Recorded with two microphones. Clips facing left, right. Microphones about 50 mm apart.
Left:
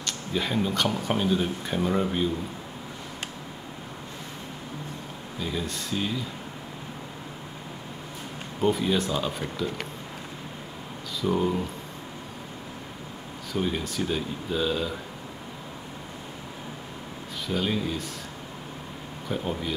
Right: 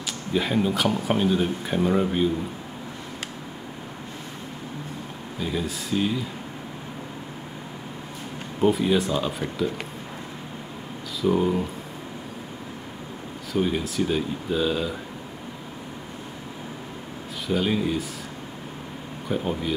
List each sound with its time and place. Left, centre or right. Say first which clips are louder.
0.0 s speech: right 3 dB; centre
5.4 s speech: right 3 dB; centre
8.5 s speech: right 3 dB; centre
11.1 s speech: right 3 dB; centre
13.5 s speech: right 4 dB; centre
17.5 s speech: right 4 dB; centre
19.2 s speech: right 3 dB; centre